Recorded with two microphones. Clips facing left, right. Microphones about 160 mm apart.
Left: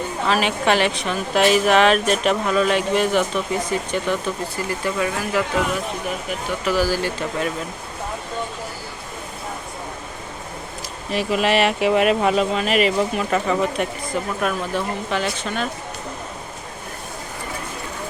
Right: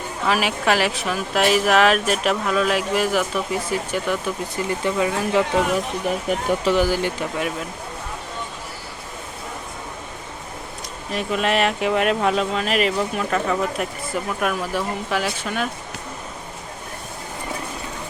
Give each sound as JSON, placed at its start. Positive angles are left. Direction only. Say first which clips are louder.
{"t": 0.3, "sound": "speech", "louder": "left 1 dB", "side_deg": -5}
{"t": 4.5, "sound": "speech", "louder": "right 4 dB", "side_deg": -20}
{"t": 6.7, "sound": "speech", "louder": "even", "side_deg": -20}
{"t": 11.1, "sound": "speech", "louder": "left 2 dB", "side_deg": 5}